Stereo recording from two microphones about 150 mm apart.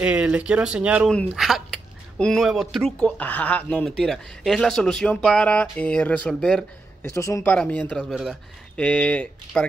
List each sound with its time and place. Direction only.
0.0 s speech: 10° right (ahead or behind)
7.1 s speech: 20° left (ahead or behind)
7.5 s speech: 10° left (ahead or behind)
8.1 s speech: 5° right (ahead or behind)
8.7 s speech: 10° left (ahead or behind)